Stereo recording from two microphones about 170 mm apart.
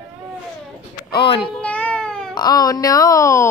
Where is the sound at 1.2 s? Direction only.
30° left (ahead or behind).